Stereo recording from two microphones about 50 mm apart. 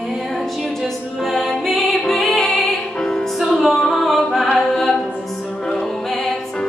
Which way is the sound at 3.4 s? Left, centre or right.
Centre.